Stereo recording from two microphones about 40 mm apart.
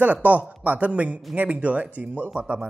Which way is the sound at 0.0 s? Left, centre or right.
Right.